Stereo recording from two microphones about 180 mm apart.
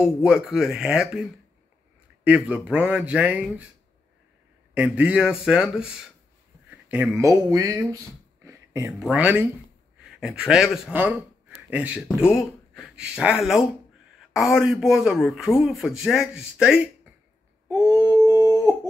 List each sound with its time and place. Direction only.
0.0 s speech: 5° right (ahead or behind)
2.2 s a man's voice: 5° right (ahead or behind)
4.7 s a man's voice: 5° right (ahead or behind)
8.5 s a sound: 15° right (ahead or behind)
9.0 s a man's voice: 5° right (ahead or behind)
10.5 s speech: centre (ahead or behind)
17.6 s a sound: 15° right (ahead or behind)